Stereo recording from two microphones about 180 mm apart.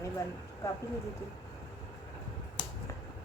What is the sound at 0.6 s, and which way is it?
Speech, 15° left (ahead or behind).